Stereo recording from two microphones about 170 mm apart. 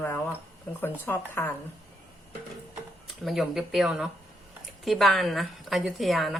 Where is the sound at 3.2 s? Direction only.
Centre (ahead or behind).